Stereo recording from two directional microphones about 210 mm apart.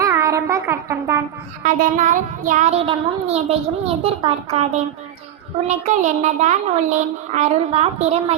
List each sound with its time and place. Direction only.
0.0 s child singing: 15° right (ahead or behind)
1.6 s child singing: 35° right (ahead or behind)